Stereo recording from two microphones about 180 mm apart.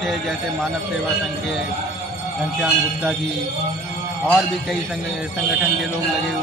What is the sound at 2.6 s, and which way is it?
Speech, 5° left (ahead or behind).